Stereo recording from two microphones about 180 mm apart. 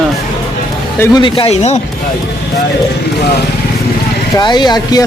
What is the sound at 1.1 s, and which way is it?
Speech, 30° left (ahead or behind).